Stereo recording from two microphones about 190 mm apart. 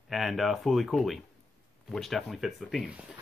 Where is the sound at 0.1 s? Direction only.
Centre (ahead or behind).